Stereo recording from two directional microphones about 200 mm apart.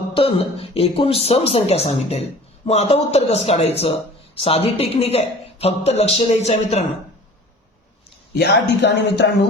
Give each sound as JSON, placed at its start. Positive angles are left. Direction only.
{"t": 0.1, "sound": "speech", "side_deg": 30}
{"t": 8.4, "sound": "speech", "side_deg": 55}